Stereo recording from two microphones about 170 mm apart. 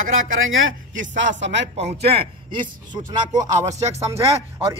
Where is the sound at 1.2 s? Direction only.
90° right.